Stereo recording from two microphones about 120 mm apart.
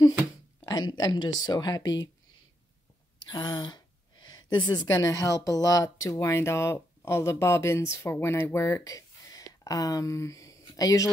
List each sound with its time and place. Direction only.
0.7 s speech: 35° left (ahead or behind)
3.2 s speech: 40° left (ahead or behind)